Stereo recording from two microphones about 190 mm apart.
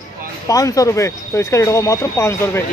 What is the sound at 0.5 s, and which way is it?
Speech, 15° left (ahead or behind).